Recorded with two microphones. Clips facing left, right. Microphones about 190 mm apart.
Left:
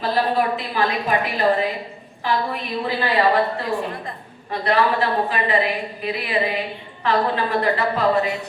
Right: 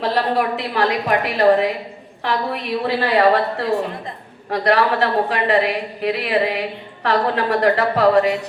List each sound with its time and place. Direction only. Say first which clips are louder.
0.0 s a woman's voice: right 1 dB; 75° right (ahead or behind)
4.5 s a woman's voice: right 2 dB; 70° right (ahead or behind)